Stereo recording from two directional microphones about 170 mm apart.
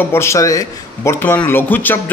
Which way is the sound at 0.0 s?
15° left (ahead or behind).